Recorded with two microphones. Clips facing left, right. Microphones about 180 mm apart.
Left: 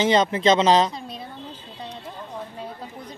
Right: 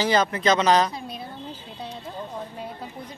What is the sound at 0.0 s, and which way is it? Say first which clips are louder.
Speech: left 3 dB; 25° left (ahead or behind).